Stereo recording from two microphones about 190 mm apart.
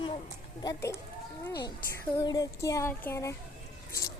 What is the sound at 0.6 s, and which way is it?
Speech, 15° left (ahead or behind).